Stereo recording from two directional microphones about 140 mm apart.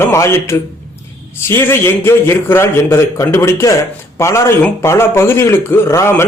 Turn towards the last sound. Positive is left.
turn(degrees=20)  # may be behind; listen again after turning